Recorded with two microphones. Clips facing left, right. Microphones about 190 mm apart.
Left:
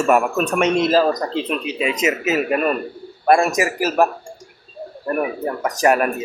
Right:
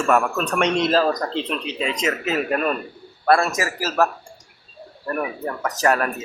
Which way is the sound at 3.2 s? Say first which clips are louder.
Left 3 dB; 15° left (ahead or behind).